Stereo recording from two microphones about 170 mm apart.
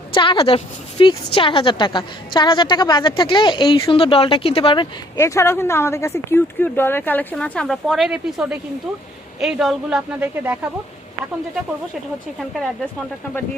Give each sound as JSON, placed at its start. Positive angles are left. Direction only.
{"t": 0.1, "sound": "a woman's voice", "side_deg": 30}
{"t": 5.2, "sound": "speech", "side_deg": 15}